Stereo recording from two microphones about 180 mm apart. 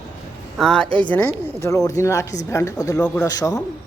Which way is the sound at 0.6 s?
5° left (ahead or behind).